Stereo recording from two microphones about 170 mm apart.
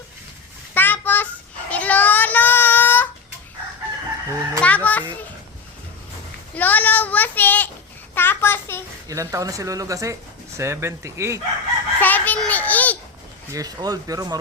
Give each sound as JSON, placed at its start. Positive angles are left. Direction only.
{"t": 0.7, "sound": "a sound", "side_deg": 10}
{"t": 1.7, "sound": "child singing", "side_deg": 10}
{"t": 4.3, "sound": "chicken", "side_deg": -15}
{"t": 4.6, "sound": "children playing", "side_deg": 10}
{"t": 6.6, "sound": "speech", "side_deg": 10}
{"t": 8.1, "sound": "a sound", "side_deg": 10}
{"t": 9.0, "sound": "speech", "side_deg": -20}
{"t": 11.9, "sound": "a sound", "side_deg": 10}
{"t": 13.5, "sound": "speech", "side_deg": -20}